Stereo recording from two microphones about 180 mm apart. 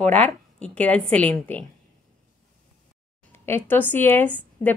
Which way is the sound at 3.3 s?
15° left (ahead or behind).